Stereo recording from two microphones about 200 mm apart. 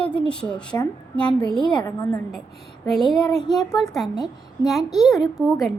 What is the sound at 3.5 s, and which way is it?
Speech, centre (ahead or behind).